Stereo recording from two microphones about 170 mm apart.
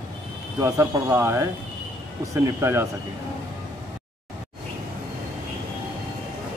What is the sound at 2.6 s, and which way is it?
Speech, 15° right (ahead or behind).